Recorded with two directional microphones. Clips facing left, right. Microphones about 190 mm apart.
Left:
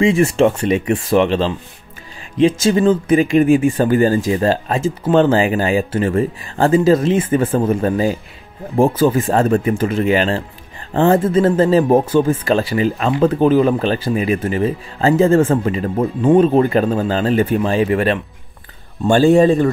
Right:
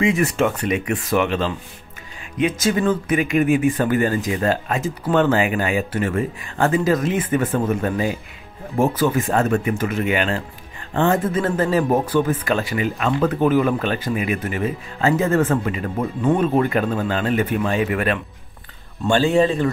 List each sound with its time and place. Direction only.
0.0 s speech: 30° left (ahead or behind)
19.0 s speech: 45° left (ahead or behind)